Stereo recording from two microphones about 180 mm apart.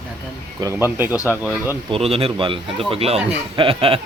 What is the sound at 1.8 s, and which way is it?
A man's voice, 30° right (ahead or behind).